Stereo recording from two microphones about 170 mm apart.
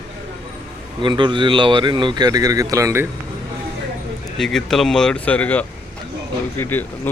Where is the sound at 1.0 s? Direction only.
30° right (ahead or behind).